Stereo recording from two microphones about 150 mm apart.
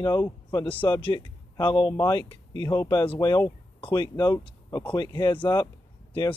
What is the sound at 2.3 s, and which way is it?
Speech, 35° left (ahead or behind).